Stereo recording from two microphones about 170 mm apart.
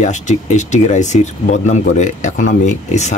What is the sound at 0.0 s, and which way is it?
Speech, 45° left (ahead or behind).